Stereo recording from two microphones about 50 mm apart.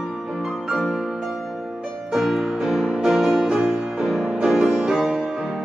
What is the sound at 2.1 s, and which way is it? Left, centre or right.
Music, centre.